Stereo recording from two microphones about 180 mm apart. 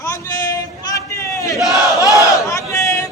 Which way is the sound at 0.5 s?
15° left (ahead or behind).